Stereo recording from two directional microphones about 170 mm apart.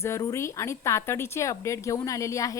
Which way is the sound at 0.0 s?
20° left (ahead or behind).